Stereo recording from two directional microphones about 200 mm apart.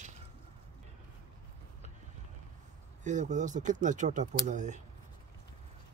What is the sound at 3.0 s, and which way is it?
Speech, 35° right (ahead or behind).